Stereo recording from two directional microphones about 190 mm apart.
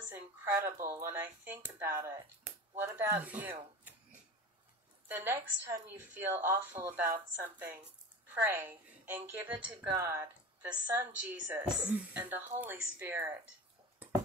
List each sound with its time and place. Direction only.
0.1 s speech: 15° right (ahead or behind)